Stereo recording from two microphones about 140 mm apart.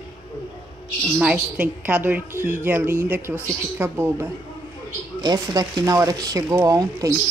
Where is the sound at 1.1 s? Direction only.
5° right (ahead or behind).